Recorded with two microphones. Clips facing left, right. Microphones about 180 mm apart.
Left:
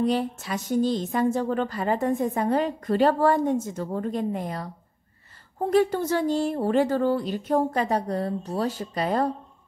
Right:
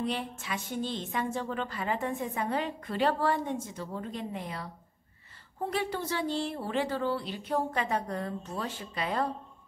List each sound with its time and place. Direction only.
0.0 s speech: 40° left (ahead or behind)